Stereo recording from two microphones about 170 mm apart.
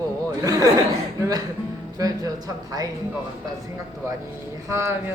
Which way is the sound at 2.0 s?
20° right (ahead or behind).